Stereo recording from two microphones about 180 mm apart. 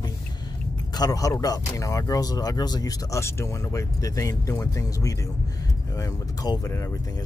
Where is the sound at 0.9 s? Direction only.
20° left (ahead or behind).